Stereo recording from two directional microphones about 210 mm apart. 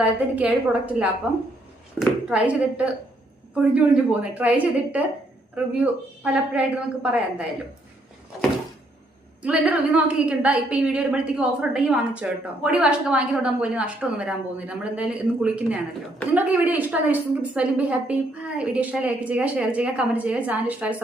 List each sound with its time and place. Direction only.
0.0 s a woman's voice: 5° right (ahead or behind)
9.4 s a woman's voice: 5° right (ahead or behind)